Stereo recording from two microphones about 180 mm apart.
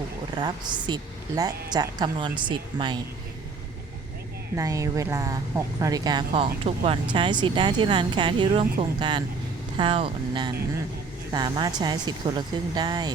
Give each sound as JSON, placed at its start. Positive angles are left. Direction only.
{"t": 0.3, "sound": "speech", "side_deg": -25}
{"t": 4.5, "sound": "speech", "side_deg": -20}